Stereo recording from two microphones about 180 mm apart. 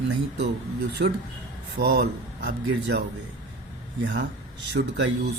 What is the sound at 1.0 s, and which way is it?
Speech, 50° right (ahead or behind).